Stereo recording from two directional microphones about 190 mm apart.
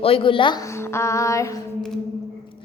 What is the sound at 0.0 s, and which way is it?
Speech, 30° left (ahead or behind).